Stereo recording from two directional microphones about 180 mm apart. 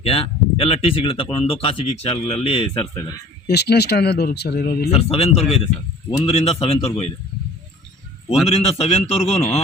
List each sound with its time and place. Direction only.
0.0 s speech: 30° left (ahead or behind)
3.4 s speech: 65° left (ahead or behind)
4.9 s speech: 35° left (ahead or behind)
8.4 s speech: 35° left (ahead or behind)